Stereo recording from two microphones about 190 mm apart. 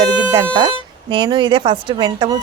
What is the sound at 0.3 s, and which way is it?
Speech, 20° right (ahead or behind).